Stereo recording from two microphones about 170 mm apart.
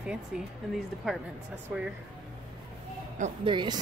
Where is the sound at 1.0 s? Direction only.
5° right (ahead or behind).